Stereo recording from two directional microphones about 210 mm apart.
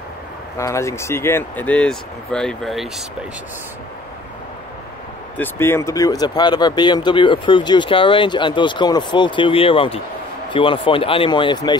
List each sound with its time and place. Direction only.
0.6 s speech: 15° left (ahead or behind)
5.4 s speech: 10° left (ahead or behind)